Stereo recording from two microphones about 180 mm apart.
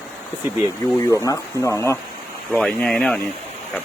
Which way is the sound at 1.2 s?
15° left (ahead or behind).